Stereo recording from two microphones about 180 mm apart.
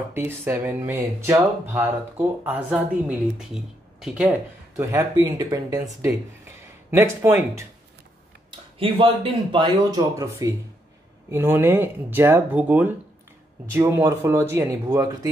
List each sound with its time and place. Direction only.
0.1 s speech: 15° right (ahead or behind)
8.7 s speech: 30° right (ahead or behind)